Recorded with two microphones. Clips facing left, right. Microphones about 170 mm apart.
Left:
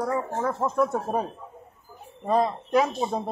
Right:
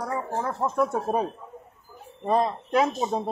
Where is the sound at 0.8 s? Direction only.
10° right (ahead or behind).